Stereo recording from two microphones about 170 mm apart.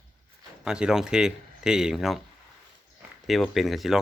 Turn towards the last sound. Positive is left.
turn(degrees=0)  # may be behind; listen again after turning